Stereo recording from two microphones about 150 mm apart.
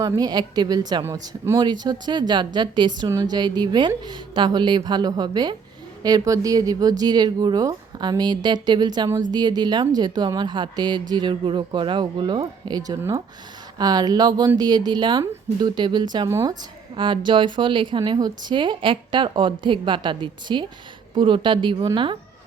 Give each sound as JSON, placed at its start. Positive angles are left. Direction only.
{"t": 0.2, "sound": "a woman's voice", "side_deg": -30}